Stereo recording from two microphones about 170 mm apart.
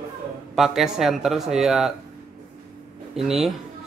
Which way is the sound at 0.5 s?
Centre (ahead or behind).